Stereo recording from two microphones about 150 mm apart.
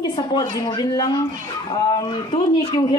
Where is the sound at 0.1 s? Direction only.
30° left (ahead or behind).